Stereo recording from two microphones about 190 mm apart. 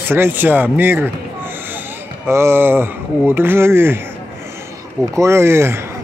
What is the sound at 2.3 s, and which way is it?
Speech, 15° right (ahead or behind).